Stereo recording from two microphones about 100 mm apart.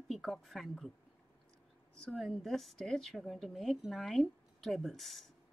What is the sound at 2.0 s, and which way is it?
A woman's voice, 5° left (ahead or behind).